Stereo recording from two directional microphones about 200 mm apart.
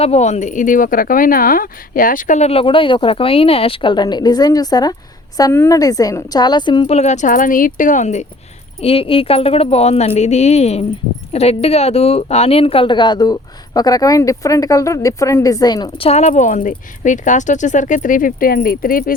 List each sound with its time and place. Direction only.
0.0 s a woman's voice: 30° left (ahead or behind)